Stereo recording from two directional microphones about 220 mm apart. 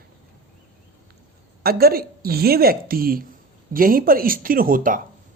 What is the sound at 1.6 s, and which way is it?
A woman's voice, 45° right (ahead or behind).